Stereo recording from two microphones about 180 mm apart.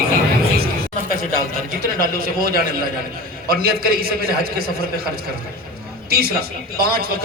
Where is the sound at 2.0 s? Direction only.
55° right (ahead or behind).